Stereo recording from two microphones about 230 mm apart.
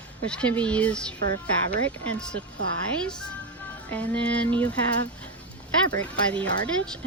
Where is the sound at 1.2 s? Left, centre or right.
Right.